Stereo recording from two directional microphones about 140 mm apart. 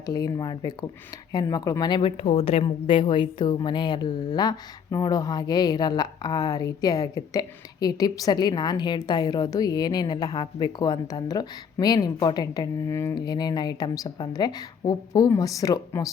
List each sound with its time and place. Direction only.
0.0 s a woman's voice: 25° left (ahead or behind)
12.9 s music: 20° left (ahead or behind)
13.1 s a woman's voice: 30° left (ahead or behind)